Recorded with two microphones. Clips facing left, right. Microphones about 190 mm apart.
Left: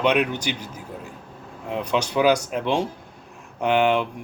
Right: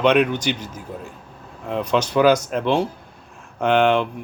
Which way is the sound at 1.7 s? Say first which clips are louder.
Right 3 dB; 10° left (ahead or behind).